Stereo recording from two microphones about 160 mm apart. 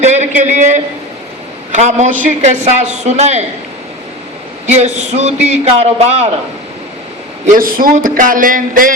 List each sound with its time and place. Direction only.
0.0 s a sound: 45° right (ahead or behind)
1.7 s a man's voice: 45° right (ahead or behind)
4.6 s a man's voice: 45° right (ahead or behind)
7.4 s a man's voice: 60° right (ahead or behind)